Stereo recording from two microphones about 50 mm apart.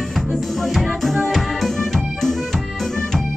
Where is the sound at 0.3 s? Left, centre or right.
Centre.